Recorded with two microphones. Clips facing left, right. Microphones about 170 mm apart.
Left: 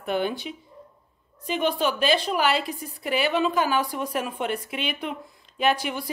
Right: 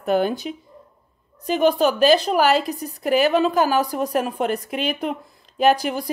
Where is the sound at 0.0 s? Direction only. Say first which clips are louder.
Right 6 dB; 40° right (ahead or behind).